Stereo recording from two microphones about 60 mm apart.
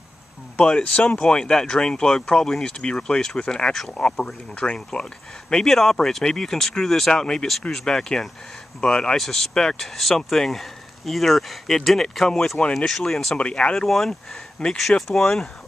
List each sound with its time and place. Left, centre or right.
0.6 s speech: centre
9.2 s speech: centre
13.4 s speech: centre
13.8 s speech: centre